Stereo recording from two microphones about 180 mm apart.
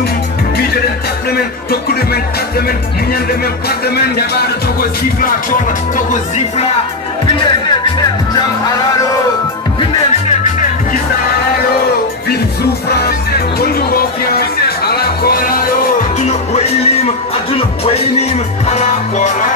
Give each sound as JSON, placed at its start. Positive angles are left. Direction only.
{"t": 3.6, "sound": "music", "side_deg": 60}
{"t": 9.8, "sound": "music", "side_deg": 40}
{"t": 13.0, "sound": "music", "side_deg": 60}
{"t": 16.2, "sound": "music", "side_deg": 35}